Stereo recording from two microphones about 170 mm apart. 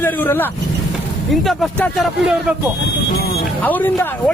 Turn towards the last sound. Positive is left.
turn(degrees=10)  # may be behind; listen again after turning